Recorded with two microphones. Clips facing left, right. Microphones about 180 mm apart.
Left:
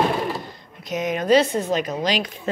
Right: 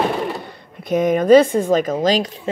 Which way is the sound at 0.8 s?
55° right (ahead or behind).